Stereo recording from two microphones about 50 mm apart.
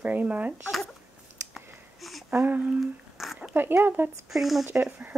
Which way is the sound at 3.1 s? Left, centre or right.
Centre.